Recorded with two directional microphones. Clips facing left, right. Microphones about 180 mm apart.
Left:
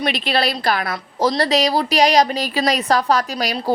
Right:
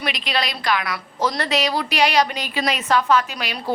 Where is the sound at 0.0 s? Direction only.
35° left (ahead or behind).